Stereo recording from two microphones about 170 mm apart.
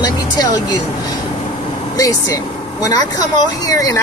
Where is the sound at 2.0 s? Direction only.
20° left (ahead or behind).